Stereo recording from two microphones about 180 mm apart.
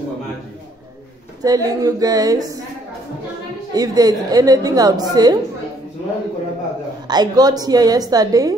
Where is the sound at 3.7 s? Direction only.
20° right (ahead or behind).